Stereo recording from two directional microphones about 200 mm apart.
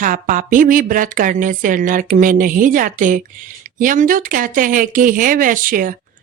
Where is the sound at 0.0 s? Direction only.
40° right (ahead or behind).